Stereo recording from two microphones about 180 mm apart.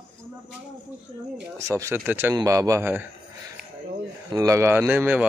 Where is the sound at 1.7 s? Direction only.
15° right (ahead or behind).